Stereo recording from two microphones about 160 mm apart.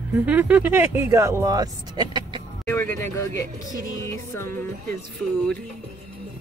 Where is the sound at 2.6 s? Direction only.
15° left (ahead or behind).